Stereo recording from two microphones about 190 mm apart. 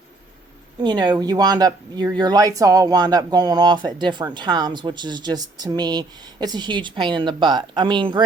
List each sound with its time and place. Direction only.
0.8 s speech: 25° right (ahead or behind)